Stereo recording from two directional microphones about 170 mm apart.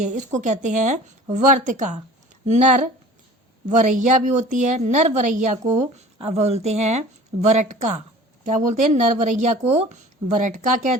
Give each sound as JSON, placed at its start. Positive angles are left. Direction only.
{"t": 0.0, "sound": "a woman's voice", "side_deg": -45}